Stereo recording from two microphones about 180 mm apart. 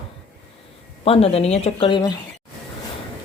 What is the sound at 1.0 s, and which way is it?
Speech, 35° left (ahead or behind).